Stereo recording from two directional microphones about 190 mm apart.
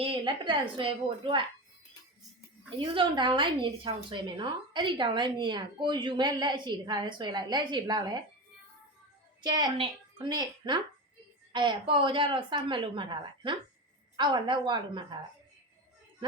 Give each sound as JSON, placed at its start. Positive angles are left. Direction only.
{"t": 0.0, "sound": "a woman's voice", "side_deg": -25}
{"t": 2.6, "sound": "a woman's voice", "side_deg": -25}
{"t": 9.4, "sound": "a woman's voice", "side_deg": -20}